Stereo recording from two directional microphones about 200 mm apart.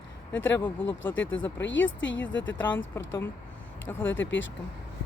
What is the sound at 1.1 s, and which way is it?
Speech, 70° left (ahead or behind).